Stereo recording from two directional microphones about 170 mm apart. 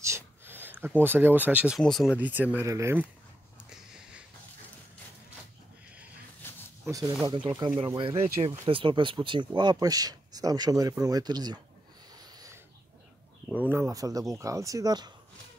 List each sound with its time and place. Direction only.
0.0 s a sound: 15° right (ahead or behind)
1.0 s speech: 10° right (ahead or behind)
1.8 s speech: centre (ahead or behind)
2.1 s speech: 10° right (ahead or behind)
6.4 s a sound: 15° left (ahead or behind)
6.8 s speech: 15° right (ahead or behind)
7.2 s speech: 25° right (ahead or behind)
12.2 s a sound: 20° right (ahead or behind)
13.5 s speech: 10° right (ahead or behind)